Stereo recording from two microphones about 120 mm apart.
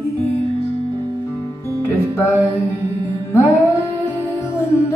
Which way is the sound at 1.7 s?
20° left (ahead or behind).